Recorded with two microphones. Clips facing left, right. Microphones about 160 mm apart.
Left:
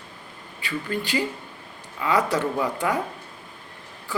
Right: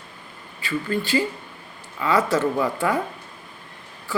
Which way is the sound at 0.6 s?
15° left (ahead or behind).